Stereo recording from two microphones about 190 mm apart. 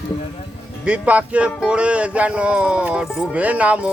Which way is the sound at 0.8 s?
5° right (ahead or behind).